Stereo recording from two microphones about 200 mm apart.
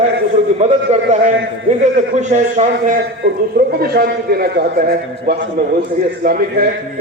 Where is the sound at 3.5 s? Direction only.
50° right (ahead or behind).